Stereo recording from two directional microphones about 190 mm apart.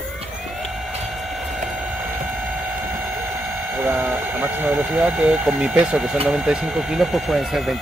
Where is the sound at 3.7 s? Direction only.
10° right (ahead or behind).